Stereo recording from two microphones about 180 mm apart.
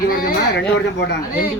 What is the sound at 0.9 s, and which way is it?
Speech, 70° left (ahead or behind).